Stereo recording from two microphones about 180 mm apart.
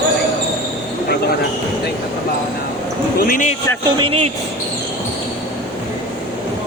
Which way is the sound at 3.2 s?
50° left (ahead or behind).